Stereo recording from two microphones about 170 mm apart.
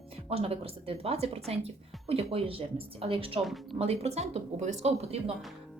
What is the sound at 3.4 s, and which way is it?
Speech, centre (ahead or behind).